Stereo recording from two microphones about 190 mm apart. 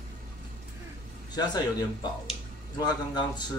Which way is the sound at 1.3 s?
20° left (ahead or behind).